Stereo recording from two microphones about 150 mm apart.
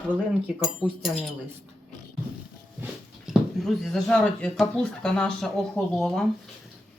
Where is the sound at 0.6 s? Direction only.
Centre (ahead or behind).